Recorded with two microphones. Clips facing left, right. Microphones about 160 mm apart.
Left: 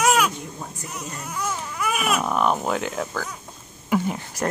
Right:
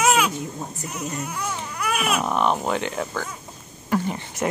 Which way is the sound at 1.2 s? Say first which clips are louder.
Even; centre (ahead or behind).